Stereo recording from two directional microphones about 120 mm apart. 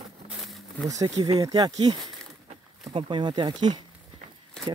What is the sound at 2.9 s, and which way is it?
Speech, 45° right (ahead or behind).